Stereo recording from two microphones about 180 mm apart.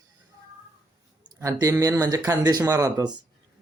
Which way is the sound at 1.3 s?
20° right (ahead or behind).